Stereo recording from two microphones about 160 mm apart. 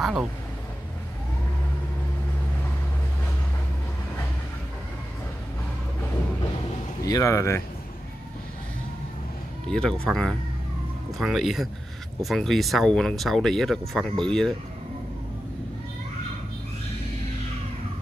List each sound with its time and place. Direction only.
0.0 s speech: 5° right (ahead or behind)
7.0 s speech: 20° left (ahead or behind)
9.7 s speech: 5° left (ahead or behind)